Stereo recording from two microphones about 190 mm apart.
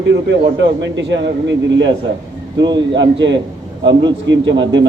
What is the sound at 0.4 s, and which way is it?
A man's voice, 70° right (ahead or behind).